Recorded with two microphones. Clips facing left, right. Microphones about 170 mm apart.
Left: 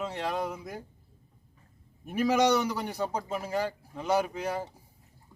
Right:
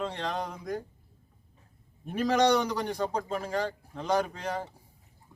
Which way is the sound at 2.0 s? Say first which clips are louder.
Even; 10° left (ahead or behind).